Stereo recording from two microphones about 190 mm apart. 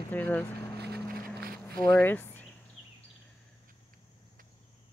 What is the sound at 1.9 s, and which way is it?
Speech, 10° left (ahead or behind).